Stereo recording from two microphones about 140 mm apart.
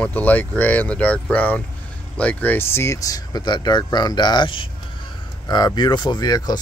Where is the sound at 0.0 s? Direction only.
10° left (ahead or behind).